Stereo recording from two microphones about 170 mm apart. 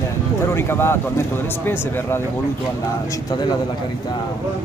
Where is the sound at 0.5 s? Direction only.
15° left (ahead or behind).